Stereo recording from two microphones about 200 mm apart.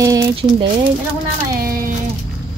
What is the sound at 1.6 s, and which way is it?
Speech, 45° right (ahead or behind).